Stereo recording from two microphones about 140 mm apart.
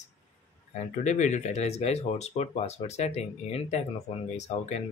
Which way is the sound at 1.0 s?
60° left (ahead or behind).